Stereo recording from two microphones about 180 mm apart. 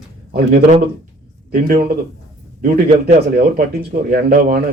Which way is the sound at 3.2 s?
60° right (ahead or behind).